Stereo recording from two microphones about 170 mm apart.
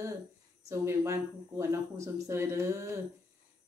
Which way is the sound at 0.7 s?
15° right (ahead or behind).